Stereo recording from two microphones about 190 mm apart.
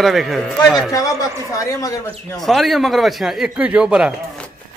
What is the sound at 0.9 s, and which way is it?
A man's voice, 20° left (ahead or behind).